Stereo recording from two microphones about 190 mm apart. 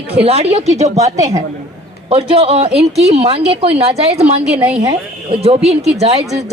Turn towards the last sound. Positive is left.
turn(degrees=-30)  # may be behind; listen again after turning